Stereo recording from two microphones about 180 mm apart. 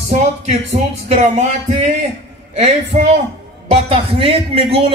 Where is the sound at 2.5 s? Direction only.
35° right (ahead or behind).